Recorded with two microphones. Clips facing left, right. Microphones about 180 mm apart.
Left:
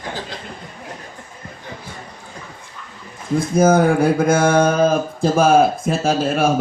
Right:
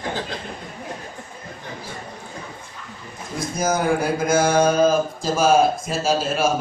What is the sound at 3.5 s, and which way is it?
Speech, 55° left (ahead or behind).